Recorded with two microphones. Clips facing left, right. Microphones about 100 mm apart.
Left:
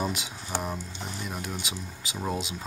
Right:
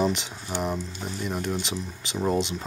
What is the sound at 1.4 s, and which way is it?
Speech, 5° left (ahead or behind).